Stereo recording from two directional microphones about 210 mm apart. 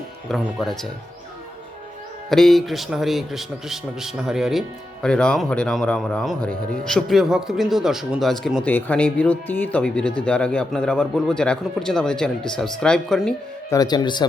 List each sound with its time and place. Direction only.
0.3 s speech: centre (ahead or behind)
2.3 s speech: centre (ahead or behind)
13.7 s speech: 20° left (ahead or behind)